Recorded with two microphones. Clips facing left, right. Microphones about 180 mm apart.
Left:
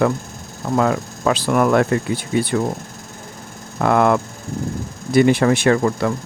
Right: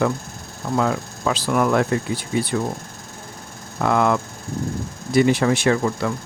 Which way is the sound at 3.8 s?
55° left (ahead or behind).